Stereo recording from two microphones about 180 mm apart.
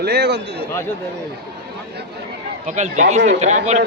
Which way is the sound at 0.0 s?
65° right (ahead or behind).